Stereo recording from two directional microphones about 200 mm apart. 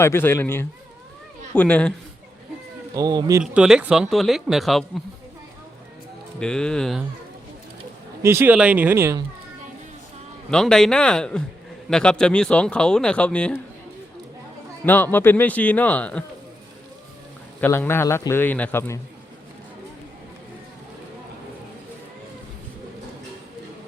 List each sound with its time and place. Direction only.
0.0 s speech: 10° left (ahead or behind)
2.9 s speech: 20° right (ahead or behind)
3.4 s speech: 5° right (ahead or behind)
6.4 s speech: 5° left (ahead or behind)
8.2 s speech: 10° right (ahead or behind)
10.5 s speech: 5° left (ahead or behind)
14.8 s speech: 10° left (ahead or behind)
17.6 s speech: 10° left (ahead or behind)